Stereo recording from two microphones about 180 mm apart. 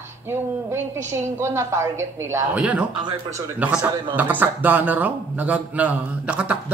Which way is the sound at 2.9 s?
25° right (ahead or behind).